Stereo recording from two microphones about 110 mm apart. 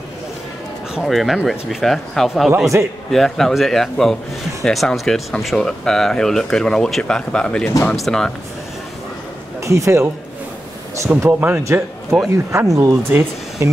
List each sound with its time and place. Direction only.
0.9 s speech: centre (ahead or behind)
2.7 s speech: 20° right (ahead or behind)
3.1 s speech: 5° left (ahead or behind)
7.6 s speech: 20° left (ahead or behind)
7.9 s speech: centre (ahead or behind)
9.6 s speech: 25° right (ahead or behind)
11.1 s speech: 15° right (ahead or behind)
12.3 s speech: 25° right (ahead or behind)